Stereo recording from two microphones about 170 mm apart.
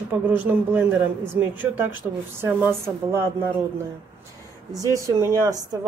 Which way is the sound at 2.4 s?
15° right (ahead or behind).